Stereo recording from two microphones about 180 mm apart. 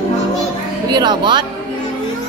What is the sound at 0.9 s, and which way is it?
Speech, 25° right (ahead or behind).